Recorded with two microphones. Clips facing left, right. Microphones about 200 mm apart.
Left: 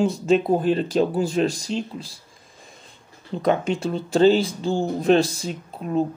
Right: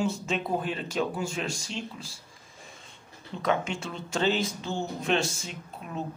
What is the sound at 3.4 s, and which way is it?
Speech, 35° left (ahead or behind).